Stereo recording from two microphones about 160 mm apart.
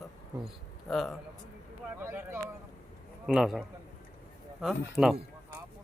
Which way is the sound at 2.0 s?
15° right (ahead or behind).